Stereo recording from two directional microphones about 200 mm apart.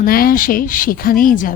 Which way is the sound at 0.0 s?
45° left (ahead or behind).